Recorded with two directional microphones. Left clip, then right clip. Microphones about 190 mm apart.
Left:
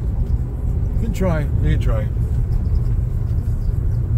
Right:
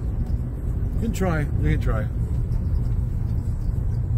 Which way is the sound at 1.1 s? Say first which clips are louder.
Left 4 dB; 30° right (ahead or behind).